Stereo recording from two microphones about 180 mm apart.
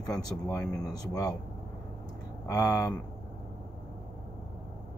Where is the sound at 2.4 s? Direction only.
20° left (ahead or behind).